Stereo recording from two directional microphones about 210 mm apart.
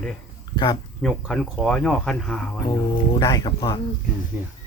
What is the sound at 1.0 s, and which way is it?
Speech, centre (ahead or behind).